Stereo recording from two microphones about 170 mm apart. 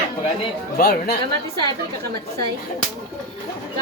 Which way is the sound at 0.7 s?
60° left (ahead or behind).